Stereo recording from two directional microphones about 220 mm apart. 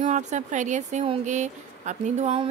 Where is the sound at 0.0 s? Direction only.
35° right (ahead or behind).